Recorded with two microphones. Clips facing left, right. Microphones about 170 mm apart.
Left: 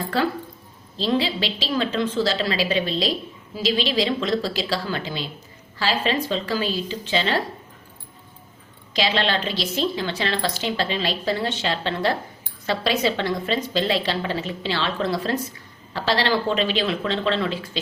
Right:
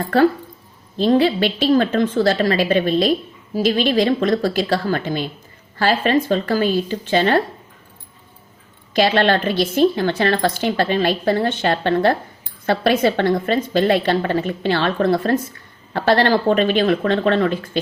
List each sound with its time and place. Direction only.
0.9 s a woman's voice: 50° right (ahead or behind)
8.9 s a woman's voice: 55° right (ahead or behind)